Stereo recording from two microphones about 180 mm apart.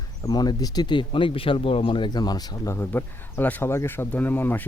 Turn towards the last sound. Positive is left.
turn(degrees=10)  # may be behind; listen again after turning